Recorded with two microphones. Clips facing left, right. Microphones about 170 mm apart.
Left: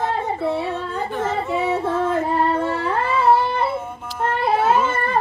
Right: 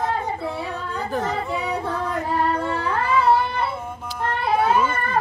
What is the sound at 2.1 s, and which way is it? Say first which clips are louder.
Music: left 3 dB; 25° left (ahead or behind).